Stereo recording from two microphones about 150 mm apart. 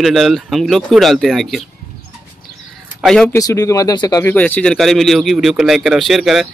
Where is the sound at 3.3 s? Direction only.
20° left (ahead or behind).